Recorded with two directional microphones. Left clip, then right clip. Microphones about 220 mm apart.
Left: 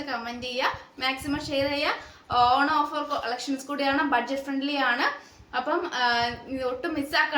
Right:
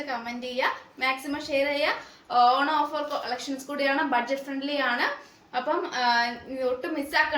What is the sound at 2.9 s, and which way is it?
A woman's voice, 15° left (ahead or behind).